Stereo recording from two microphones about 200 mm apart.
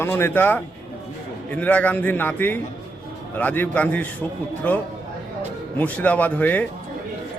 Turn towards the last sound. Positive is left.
turn(degrees=10)  # may be behind; listen again after turning